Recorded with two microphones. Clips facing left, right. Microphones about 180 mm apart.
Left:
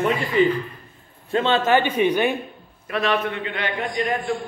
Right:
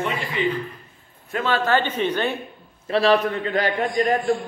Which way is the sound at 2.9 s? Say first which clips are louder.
Right 4 dB; 35° right (ahead or behind).